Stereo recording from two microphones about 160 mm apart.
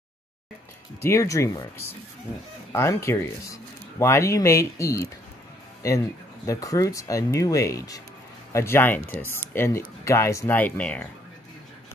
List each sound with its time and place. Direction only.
1.0 s speech: 20° left (ahead or behind)